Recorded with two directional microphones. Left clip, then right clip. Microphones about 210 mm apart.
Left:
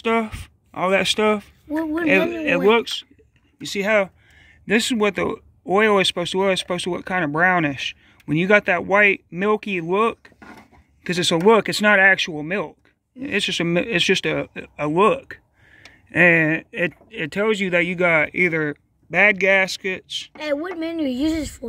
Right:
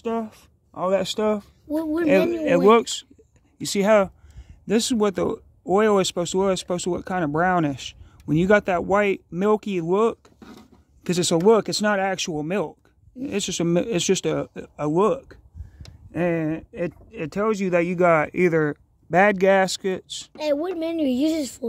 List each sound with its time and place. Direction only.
0.0 s speech: 5° left (ahead or behind)
1.7 s a sound: 50° right (ahead or behind)
2.4 s speech: 15° right (ahead or behind)
3.5 s speech: 30° right (ahead or behind)
4.6 s speech: 5° right (ahead or behind)
12.2 s speech: 15° right (ahead or behind); by 15.2 s 5° left (ahead or behind)
16.1 s speech: 15° left (ahead or behind)
17.6 s speech: 5° right (ahead or behind); by 20.3 s 20° right (ahead or behind)
20.5 s speech: 40° right (ahead or behind)